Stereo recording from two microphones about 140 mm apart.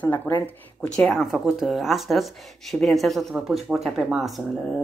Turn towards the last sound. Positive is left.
turn(degrees=0)  # may be behind; listen again after turning